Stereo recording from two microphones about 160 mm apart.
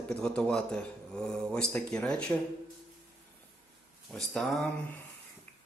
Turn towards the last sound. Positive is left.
turn(degrees=0)  # may be behind; listen again after turning